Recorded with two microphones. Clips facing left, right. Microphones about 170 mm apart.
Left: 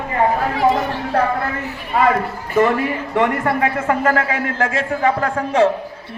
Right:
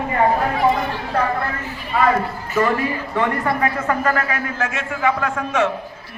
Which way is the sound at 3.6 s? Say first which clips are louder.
Left 2 dB; 25° left (ahead or behind).